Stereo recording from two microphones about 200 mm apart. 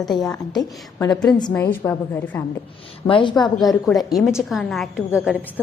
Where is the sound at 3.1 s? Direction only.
25° left (ahead or behind).